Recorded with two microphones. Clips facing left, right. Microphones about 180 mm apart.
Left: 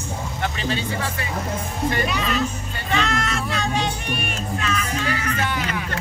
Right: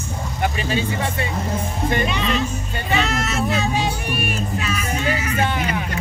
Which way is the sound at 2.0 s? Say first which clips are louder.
Right 1 dB; centre (ahead or behind).